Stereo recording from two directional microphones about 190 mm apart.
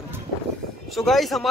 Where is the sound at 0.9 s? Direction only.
Centre (ahead or behind).